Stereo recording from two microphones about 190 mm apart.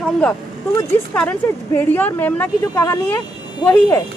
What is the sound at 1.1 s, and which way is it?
A woman's voice, 10° left (ahead or behind).